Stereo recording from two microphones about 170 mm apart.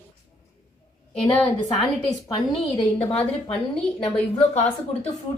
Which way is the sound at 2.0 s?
30° left (ahead or behind).